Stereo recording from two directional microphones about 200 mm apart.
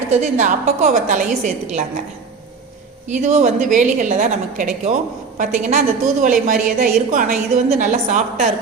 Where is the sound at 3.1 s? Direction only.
40° right (ahead or behind).